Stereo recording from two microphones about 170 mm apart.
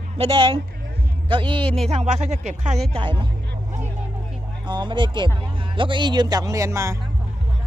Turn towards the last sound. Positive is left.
turn(degrees=-20)  # may be behind; listen again after turning